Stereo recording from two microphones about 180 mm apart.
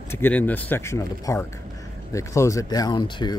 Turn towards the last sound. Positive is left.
turn(degrees=25)  # may be behind; listen again after turning